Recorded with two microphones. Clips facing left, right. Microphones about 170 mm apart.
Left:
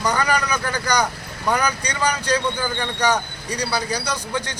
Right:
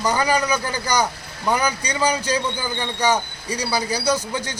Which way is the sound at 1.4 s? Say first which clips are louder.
Even; 5° right (ahead or behind).